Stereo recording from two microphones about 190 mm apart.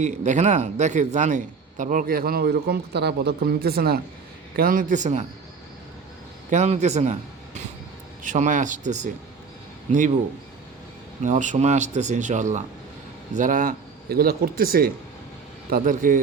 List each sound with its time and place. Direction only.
0.0 s a man's voice: 40° right (ahead or behind)
6.5 s speech: 35° right (ahead or behind)
8.2 s speech: 40° right (ahead or behind)
11.2 s a man's voice: 40° right (ahead or behind)